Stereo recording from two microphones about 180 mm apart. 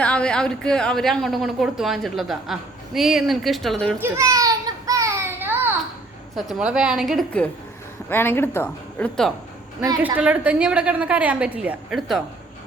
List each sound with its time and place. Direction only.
0.0 s a woman's voice: 5° left (ahead or behind)
4.0 s a sound: 15° right (ahead or behind)
6.3 s a woman's voice: 5° right (ahead or behind)
10.0 s a woman's voice: 10° right (ahead or behind)